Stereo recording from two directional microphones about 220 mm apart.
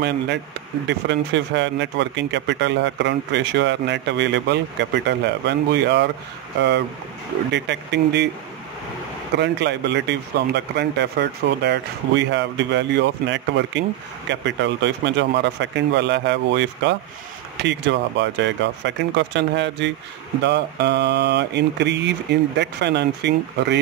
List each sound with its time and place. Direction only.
0.8 s speech: 55° right (ahead or behind)
7.5 s speech: 50° right (ahead or behind)
9.4 s speech: 50° right (ahead or behind)